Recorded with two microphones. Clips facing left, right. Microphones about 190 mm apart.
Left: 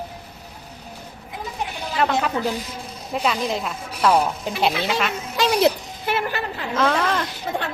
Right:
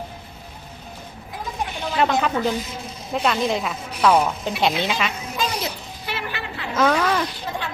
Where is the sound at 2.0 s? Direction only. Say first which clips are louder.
Right 1 dB; centre (ahead or behind).